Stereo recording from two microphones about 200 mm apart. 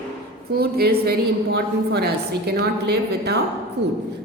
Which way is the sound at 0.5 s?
50° right (ahead or behind).